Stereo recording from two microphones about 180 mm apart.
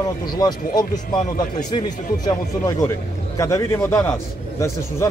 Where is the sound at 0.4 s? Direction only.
25° left (ahead or behind).